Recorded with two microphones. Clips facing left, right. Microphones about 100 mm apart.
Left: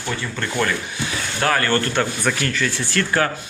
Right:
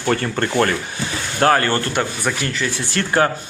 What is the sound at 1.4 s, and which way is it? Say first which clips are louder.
A man's voice: right 4 dB; 30° right (ahead or behind).